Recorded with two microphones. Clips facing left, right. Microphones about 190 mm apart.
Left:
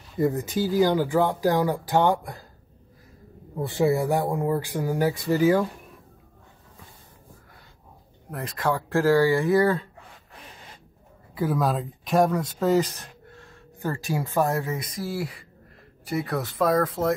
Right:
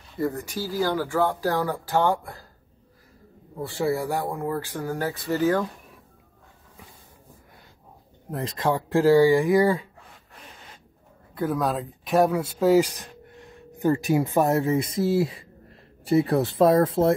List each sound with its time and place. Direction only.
0.2 s speech: 20° left (ahead or behind)
3.6 s speech: 20° left (ahead or behind)
8.3 s speech: 25° right (ahead or behind)
11.3 s speech: centre (ahead or behind); by 17.1 s 30° right (ahead or behind)